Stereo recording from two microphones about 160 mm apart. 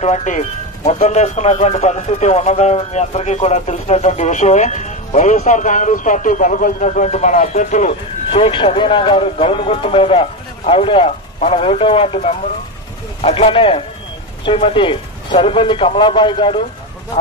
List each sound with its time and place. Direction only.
0.0 s speech: 50° left (ahead or behind)
8.3 s speech: 35° left (ahead or behind)